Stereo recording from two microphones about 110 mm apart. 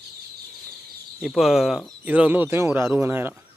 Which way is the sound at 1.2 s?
Centre (ahead or behind).